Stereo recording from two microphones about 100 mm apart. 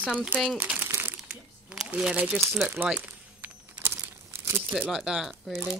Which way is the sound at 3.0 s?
20° right (ahead or behind).